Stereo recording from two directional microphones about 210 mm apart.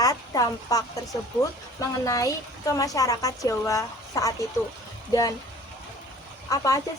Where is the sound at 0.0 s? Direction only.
15° left (ahead or behind).